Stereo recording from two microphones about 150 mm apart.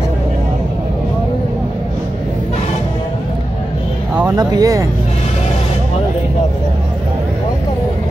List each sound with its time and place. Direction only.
4.4 s speech: 25° right (ahead or behind)